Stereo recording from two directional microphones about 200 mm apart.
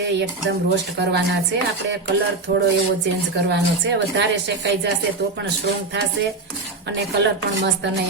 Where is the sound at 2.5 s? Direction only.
60° right (ahead or behind).